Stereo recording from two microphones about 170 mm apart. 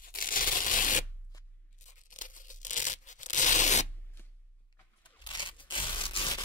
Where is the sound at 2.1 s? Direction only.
50° left (ahead or behind).